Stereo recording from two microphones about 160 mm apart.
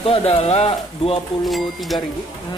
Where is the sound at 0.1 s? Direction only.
40° left (ahead or behind).